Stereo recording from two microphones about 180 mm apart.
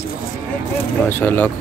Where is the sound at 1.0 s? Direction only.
10° left (ahead or behind).